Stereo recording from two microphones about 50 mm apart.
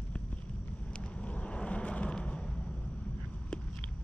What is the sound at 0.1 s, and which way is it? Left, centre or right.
Vehicle, left.